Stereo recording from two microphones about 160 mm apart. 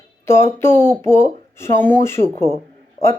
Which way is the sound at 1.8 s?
15° left (ahead or behind).